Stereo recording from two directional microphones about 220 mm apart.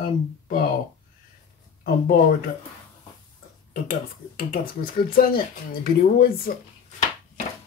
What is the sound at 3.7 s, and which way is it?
Speech, 40° left (ahead or behind).